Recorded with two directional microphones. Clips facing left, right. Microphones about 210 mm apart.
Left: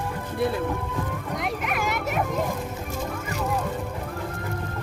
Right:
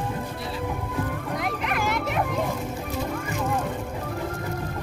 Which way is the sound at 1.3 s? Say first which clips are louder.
Even; centre (ahead or behind).